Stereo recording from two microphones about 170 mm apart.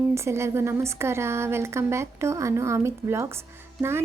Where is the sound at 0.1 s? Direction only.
15° right (ahead or behind).